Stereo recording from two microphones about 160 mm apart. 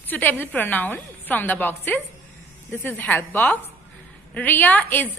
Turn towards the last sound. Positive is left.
turn(degrees=10)  # may be behind; listen again after turning